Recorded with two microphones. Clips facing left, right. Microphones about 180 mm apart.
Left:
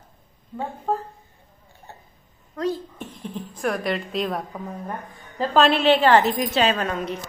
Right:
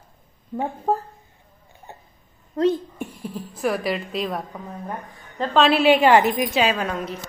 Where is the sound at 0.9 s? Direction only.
40° right (ahead or behind).